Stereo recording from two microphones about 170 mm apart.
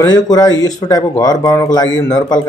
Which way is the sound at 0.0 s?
25° left (ahead or behind).